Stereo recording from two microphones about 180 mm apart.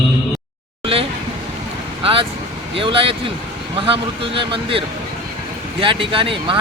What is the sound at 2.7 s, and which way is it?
Speech, 30° right (ahead or behind).